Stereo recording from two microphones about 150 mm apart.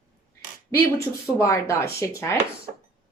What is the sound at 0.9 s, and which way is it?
Speech, 20° left (ahead or behind).